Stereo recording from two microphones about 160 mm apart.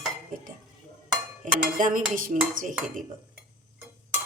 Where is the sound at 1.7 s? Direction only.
55° right (ahead or behind).